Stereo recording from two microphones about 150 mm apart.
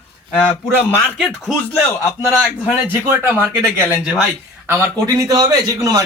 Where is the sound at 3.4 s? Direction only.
5° left (ahead or behind).